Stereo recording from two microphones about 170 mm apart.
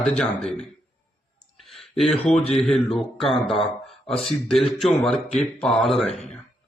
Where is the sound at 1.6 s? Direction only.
Centre (ahead or behind).